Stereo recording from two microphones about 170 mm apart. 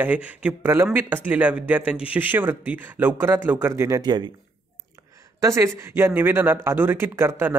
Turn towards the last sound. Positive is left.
turn(degrees=-15)  # may be behind; listen again after turning